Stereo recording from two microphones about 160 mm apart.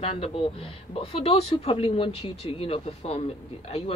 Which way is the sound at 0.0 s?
35° left (ahead or behind).